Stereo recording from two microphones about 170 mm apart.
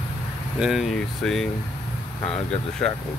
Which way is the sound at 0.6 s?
Centre (ahead or behind).